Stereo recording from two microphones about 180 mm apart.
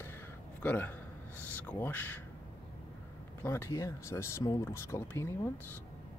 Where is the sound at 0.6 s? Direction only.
10° left (ahead or behind).